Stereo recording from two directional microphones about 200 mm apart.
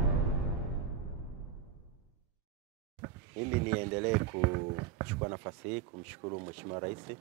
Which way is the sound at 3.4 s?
15° right (ahead or behind).